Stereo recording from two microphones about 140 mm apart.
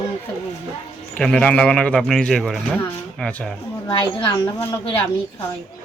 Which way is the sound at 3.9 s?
30° left (ahead or behind).